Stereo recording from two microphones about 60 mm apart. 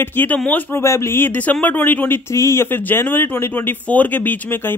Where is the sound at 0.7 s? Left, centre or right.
Left.